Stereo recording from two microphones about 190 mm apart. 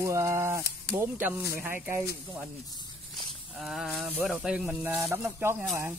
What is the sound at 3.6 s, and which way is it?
Speech, centre (ahead or behind).